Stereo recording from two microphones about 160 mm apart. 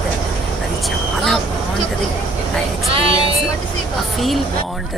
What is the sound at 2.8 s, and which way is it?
Music, 35° right (ahead or behind).